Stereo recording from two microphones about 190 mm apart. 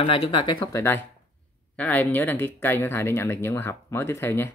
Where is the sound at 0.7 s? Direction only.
10° left (ahead or behind).